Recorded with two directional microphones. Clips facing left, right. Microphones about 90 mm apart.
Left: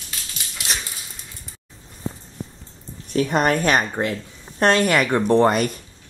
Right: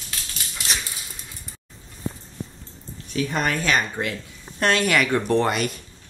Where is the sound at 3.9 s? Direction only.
35° left (ahead or behind).